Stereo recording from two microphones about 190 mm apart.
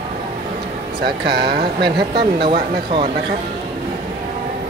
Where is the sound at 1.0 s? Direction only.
55° right (ahead or behind).